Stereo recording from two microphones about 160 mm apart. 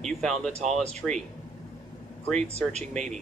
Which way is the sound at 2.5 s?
45° right (ahead or behind).